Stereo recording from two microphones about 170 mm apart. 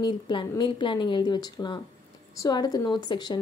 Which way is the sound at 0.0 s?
30° left (ahead or behind).